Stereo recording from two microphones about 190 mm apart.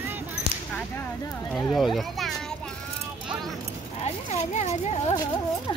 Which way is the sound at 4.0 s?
40° left (ahead or behind).